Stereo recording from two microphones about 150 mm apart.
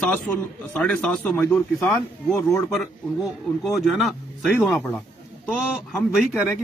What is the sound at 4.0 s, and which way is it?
Speech, centre (ahead or behind).